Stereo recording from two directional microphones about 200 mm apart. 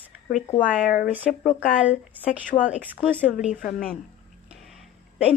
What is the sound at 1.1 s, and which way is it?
Speech, 5° left (ahead or behind).